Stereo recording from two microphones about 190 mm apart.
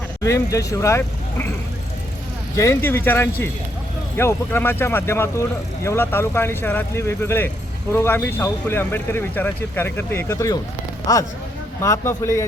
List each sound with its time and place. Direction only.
0.2 s speech: 15° left (ahead or behind)
2.6 s speech: 15° left (ahead or behind)